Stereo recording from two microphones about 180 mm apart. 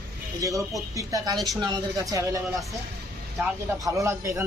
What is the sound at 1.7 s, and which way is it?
Speech, 20° right (ahead or behind).